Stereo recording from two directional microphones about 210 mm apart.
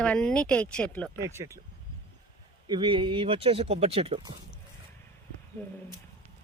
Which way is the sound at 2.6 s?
20° right (ahead or behind).